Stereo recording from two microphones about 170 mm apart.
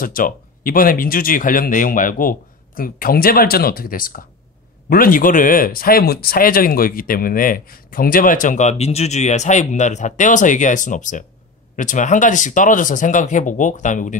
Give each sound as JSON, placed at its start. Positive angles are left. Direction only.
{"t": 0.0, "sound": "speech", "side_deg": 55}